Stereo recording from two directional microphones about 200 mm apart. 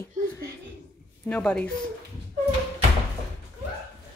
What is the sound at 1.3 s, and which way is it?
Speech, 5° left (ahead or behind).